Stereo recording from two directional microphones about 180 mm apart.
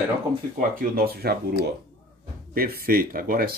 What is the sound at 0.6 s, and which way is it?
Speech, 55° right (ahead or behind).